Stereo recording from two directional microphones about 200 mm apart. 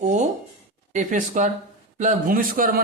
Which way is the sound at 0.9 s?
35° right (ahead or behind).